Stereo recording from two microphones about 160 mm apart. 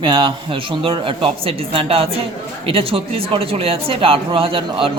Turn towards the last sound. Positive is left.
turn(degrees=-35)  # may be behind; listen again after turning